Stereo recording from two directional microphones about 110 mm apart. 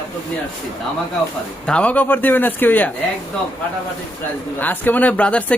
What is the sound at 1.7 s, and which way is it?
Speech, 10° left (ahead or behind).